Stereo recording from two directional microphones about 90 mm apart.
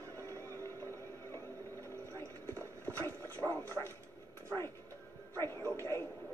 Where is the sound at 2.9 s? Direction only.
35° right (ahead or behind).